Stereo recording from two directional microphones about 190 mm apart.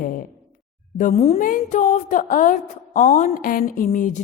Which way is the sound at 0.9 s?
40° left (ahead or behind).